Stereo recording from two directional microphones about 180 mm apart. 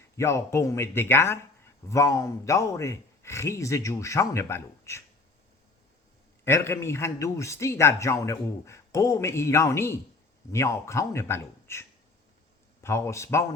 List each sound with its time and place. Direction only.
0.2 s a man's voice: 15° left (ahead or behind)
6.4 s a man's voice: 15° left (ahead or behind)